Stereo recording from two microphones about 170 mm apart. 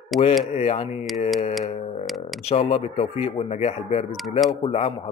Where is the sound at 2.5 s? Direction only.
35° left (ahead or behind).